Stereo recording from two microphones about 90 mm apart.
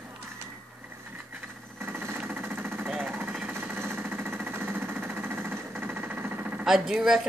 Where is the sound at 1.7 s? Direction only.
25° right (ahead or behind).